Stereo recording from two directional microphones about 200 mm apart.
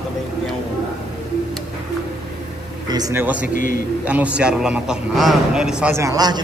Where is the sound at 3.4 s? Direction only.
45° left (ahead or behind).